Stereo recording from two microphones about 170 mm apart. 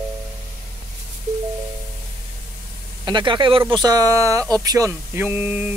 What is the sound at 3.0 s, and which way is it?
Speech, 25° right (ahead or behind).